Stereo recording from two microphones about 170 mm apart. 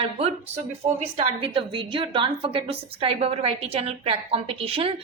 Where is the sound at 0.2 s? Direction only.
40° right (ahead or behind).